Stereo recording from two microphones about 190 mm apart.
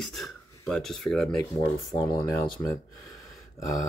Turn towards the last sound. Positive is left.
turn(degrees=15)  # may be behind; listen again after turning